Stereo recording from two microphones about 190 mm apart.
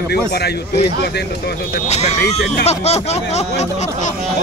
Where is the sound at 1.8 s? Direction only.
35° left (ahead or behind).